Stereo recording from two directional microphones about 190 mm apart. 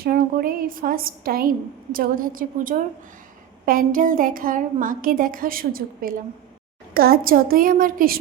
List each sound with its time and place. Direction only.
0.0 s a woman's voice: 50° right (ahead or behind)